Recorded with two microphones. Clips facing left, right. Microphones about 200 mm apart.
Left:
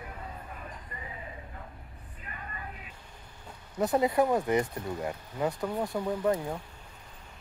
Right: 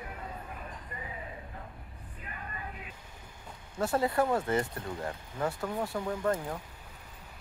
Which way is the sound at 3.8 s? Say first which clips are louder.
Left 3 dB; 20° left (ahead or behind).